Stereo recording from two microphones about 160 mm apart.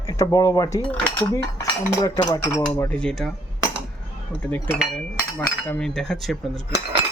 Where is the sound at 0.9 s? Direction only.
10° left (ahead or behind).